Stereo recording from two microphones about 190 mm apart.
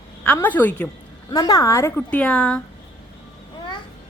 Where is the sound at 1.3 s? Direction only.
20° left (ahead or behind).